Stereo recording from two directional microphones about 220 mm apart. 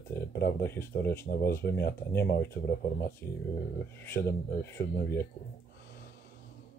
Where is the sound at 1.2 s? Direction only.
45° left (ahead or behind).